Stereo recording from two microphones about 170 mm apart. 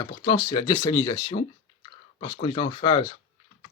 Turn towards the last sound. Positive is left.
turn(degrees=30)  # may be behind; listen again after turning